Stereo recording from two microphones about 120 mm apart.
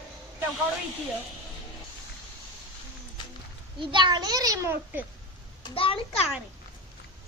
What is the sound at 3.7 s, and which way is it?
A child's voice, 40° right (ahead or behind).